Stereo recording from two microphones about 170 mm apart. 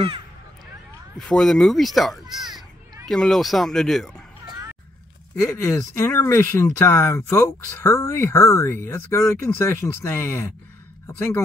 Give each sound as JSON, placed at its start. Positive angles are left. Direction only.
{"t": 1.1, "sound": "speech", "side_deg": 5}
{"t": 5.4, "sound": "speech", "side_deg": 20}